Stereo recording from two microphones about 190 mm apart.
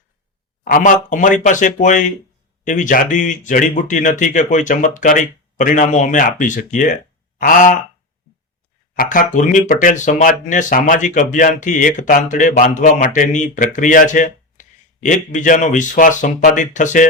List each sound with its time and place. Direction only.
0.6 s speech: 45° left (ahead or behind)
9.0 s speech: 45° left (ahead or behind)